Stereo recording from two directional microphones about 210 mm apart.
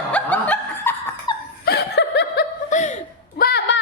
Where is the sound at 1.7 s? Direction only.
50° left (ahead or behind).